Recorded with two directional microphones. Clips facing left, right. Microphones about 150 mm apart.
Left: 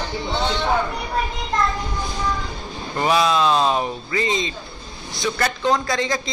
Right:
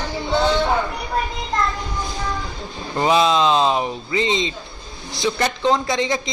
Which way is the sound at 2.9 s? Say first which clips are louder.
Right 2 dB; 20° right (ahead or behind).